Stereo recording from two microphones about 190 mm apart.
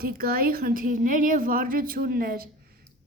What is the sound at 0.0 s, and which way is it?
A woman's voice, 50° right (ahead or behind).